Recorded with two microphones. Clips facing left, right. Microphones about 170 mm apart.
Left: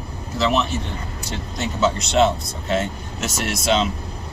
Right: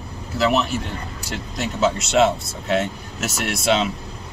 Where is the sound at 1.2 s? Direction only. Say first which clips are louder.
Even; 5° right (ahead or behind).